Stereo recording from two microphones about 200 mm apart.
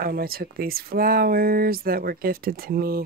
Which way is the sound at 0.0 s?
50° right (ahead or behind).